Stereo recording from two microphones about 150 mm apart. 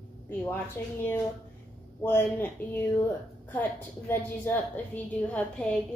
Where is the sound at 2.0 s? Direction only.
15° left (ahead or behind).